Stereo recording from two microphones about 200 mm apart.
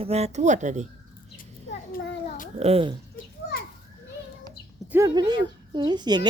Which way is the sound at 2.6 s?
30° right (ahead or behind).